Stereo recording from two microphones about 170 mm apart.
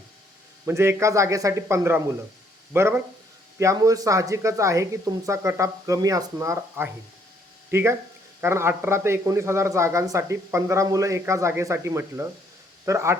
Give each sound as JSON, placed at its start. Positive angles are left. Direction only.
{"t": 0.6, "sound": "a man's voice", "side_deg": -15}